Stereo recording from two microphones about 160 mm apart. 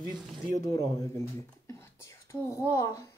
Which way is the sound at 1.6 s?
20° left (ahead or behind).